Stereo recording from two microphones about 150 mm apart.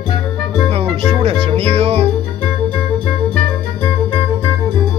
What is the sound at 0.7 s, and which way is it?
Music, 40° right (ahead or behind).